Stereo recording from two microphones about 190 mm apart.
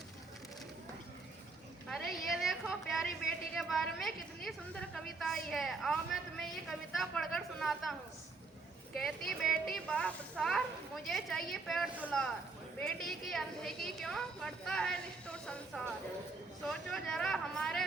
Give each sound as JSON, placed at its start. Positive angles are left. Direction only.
{"t": 1.9, "sound": "a sound", "side_deg": 0}
{"t": 3.6, "sound": "a woman's voice", "side_deg": 0}
{"t": 9.0, "sound": "a woman's voice", "side_deg": 0}